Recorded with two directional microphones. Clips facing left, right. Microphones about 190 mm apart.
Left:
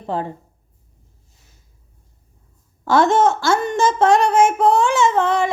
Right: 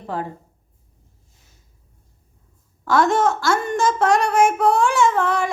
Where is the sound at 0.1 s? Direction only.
25° left (ahead or behind).